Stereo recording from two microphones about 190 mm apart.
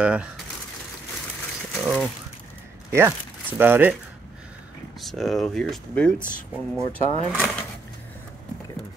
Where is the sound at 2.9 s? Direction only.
15° right (ahead or behind).